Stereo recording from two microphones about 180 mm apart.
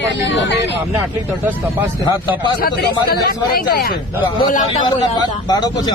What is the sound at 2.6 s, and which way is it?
Speech, 60° left (ahead or behind).